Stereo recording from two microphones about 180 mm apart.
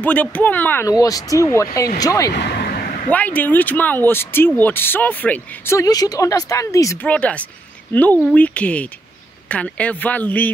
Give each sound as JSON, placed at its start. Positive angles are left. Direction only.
{"t": 0.0, "sound": "speech", "side_deg": 10}
{"t": 2.3, "sound": "a sound", "side_deg": 65}
{"t": 3.1, "sound": "speech", "side_deg": 10}